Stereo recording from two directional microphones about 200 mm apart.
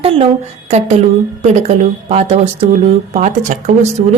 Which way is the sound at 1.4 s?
35° right (ahead or behind).